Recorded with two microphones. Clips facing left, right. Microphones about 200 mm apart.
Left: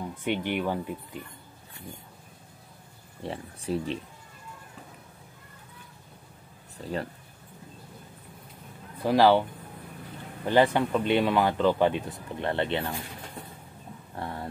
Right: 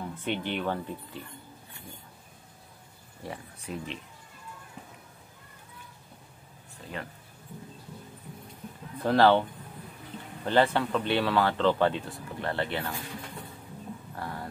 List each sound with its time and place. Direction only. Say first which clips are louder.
0.2 s speech: left 3 dB; 15° left (ahead or behind)
3.3 s speech: left 6 dB; 35° left (ahead or behind)
9.0 s speech: left 1 dB; 10° left (ahead or behind)
10.4 s speech: left 2 dB; 15° left (ahead or behind)
14.1 s a sound: left 4 dB; 25° left (ahead or behind)